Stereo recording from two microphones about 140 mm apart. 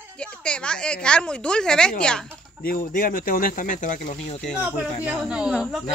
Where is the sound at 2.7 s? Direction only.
90° left; by 4.0 s 65° left (ahead or behind).